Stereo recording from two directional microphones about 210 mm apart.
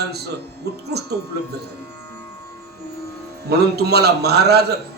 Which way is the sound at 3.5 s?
50° right (ahead or behind).